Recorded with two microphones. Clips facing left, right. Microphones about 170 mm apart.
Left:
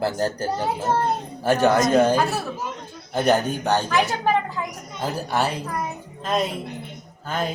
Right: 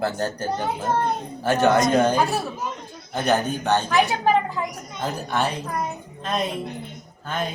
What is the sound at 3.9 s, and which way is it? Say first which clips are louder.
Speech: right 2 dB; 15° right (ahead or behind).